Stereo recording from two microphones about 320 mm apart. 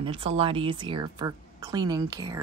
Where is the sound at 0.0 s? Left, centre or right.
Centre.